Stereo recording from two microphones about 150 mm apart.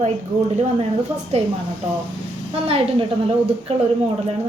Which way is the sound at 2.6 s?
40° right (ahead or behind).